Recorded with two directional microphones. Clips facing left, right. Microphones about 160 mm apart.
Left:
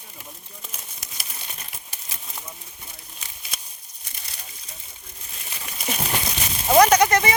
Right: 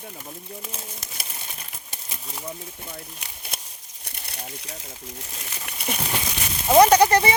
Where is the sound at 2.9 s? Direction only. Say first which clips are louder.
Right 7 dB; 60° right (ahead or behind).